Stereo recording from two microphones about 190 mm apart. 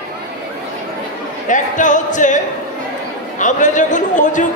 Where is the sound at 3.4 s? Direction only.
40° left (ahead or behind).